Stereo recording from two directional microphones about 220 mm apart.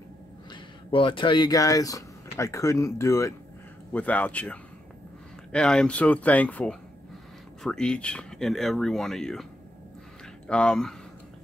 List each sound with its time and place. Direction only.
0.5 s speech: 25° left (ahead or behind); by 11.0 s 5° left (ahead or behind)